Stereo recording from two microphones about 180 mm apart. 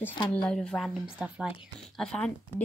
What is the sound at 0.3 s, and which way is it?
Speech, 5° left (ahead or behind).